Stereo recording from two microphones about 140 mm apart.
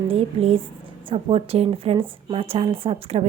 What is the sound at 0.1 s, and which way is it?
A woman's voice, 45° right (ahead or behind).